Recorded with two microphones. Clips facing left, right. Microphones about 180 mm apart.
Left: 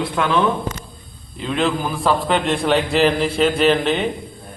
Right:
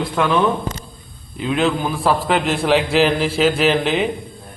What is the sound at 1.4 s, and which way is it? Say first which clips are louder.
A man's voice: right 2 dB; 5° right (ahead or behind).